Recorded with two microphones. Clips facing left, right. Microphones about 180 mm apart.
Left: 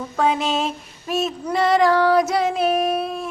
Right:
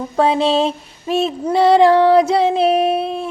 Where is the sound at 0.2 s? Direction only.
30° right (ahead or behind).